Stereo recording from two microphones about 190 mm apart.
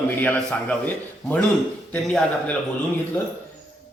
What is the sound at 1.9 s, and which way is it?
Speech, 5° left (ahead or behind).